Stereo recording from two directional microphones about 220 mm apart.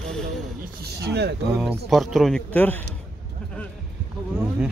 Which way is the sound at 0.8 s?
50° right (ahead or behind).